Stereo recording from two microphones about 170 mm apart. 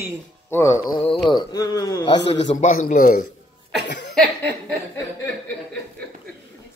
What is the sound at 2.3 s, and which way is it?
Speech, 45° left (ahead or behind).